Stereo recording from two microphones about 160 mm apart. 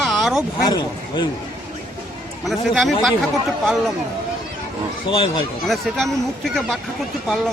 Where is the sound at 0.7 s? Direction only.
25° left (ahead or behind).